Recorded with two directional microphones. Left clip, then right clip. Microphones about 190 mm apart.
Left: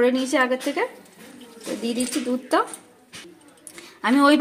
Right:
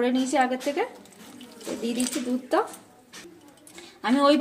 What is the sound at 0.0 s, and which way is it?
Speech, 35° left (ahead or behind).